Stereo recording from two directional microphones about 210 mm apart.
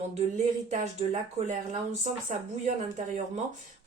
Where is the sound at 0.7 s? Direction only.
35° right (ahead or behind).